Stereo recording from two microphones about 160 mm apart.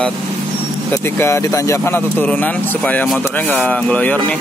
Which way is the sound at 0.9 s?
15° left (ahead or behind).